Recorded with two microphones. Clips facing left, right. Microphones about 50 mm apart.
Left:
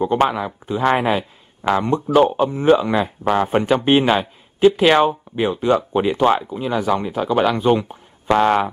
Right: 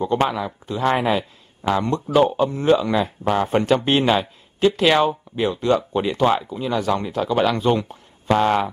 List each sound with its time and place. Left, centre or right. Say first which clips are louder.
0.0 s a man's voice: left 3 dB; left